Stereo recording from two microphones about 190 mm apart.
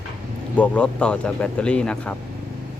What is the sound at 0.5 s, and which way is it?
A man's voice, 5° left (ahead or behind).